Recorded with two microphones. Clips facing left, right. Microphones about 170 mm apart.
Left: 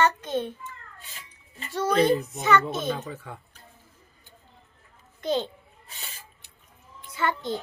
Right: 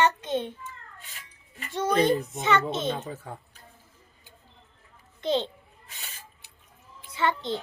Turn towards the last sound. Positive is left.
turn(degrees=-25)  # may be behind; listen again after turning